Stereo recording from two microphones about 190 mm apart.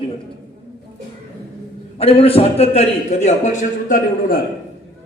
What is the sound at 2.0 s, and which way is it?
A man's voice, 30° left (ahead or behind).